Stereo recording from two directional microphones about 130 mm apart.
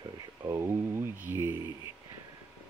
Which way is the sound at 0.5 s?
20° right (ahead or behind).